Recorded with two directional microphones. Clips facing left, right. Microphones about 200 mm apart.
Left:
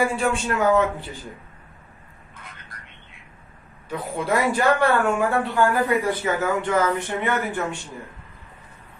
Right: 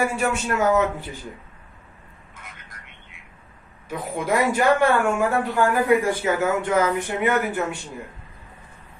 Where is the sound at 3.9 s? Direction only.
10° right (ahead or behind).